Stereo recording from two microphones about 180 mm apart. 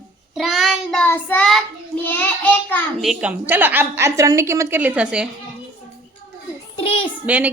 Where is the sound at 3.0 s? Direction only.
5° right (ahead or behind).